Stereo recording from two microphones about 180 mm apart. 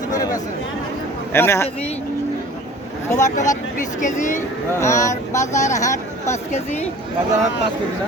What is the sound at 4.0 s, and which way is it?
Speech, 45° left (ahead or behind).